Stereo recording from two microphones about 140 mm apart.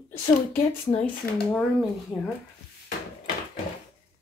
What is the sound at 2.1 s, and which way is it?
Speech, 35° left (ahead or behind).